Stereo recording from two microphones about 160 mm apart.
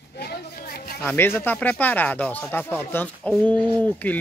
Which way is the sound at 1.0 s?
15° left (ahead or behind).